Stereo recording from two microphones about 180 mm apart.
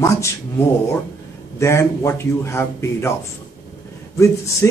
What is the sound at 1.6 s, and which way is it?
A man's voice, 15° left (ahead or behind).